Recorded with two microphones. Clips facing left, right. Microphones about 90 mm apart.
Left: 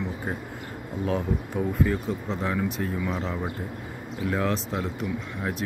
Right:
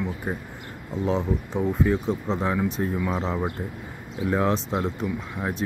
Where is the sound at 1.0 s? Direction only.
20° right (ahead or behind).